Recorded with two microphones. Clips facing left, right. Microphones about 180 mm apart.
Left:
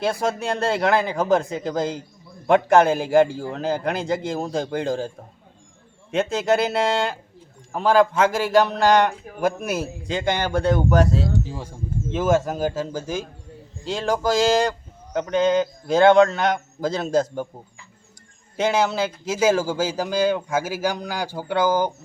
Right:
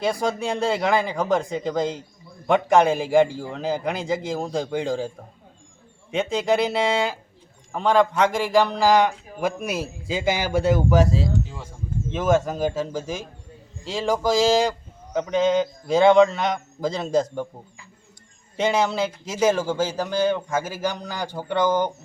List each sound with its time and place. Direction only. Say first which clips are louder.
0.0 s a man's voice: even; centre (ahead or behind)
11.4 s speech: left 5 dB; 35° left (ahead or behind)
12.1 s a man's voice: even; 5° left (ahead or behind)
18.5 s speech: left 1 dB; centre (ahead or behind)